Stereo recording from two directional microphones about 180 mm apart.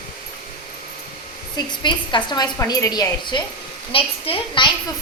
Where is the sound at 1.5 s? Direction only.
25° left (ahead or behind).